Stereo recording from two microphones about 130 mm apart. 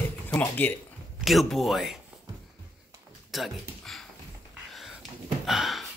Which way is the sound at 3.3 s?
Centre (ahead or behind).